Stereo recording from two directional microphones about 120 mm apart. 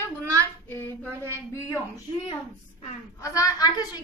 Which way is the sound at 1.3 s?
20° left (ahead or behind).